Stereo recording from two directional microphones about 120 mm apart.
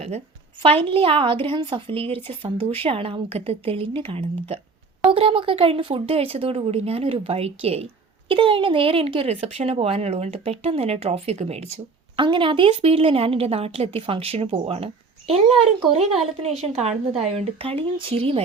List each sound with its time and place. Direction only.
0.8 s speech: 50° right (ahead or behind)
8.3 s speech: 45° right (ahead or behind)
12.1 s speech: 45° right (ahead or behind)
16.6 s speech: 60° right (ahead or behind)